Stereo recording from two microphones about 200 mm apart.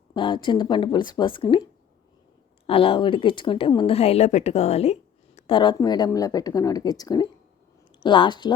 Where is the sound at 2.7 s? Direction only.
25° left (ahead or behind).